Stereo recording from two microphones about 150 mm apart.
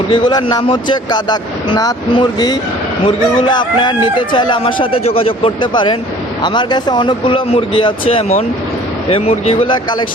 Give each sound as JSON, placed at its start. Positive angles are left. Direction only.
{"t": 0.1, "sound": "speech", "side_deg": 30}